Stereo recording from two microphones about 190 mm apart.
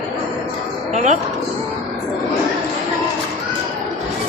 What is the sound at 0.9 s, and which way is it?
Speech, 40° right (ahead or behind).